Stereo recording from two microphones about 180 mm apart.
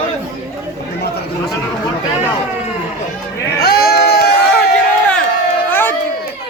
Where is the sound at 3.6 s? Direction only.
60° left (ahead or behind).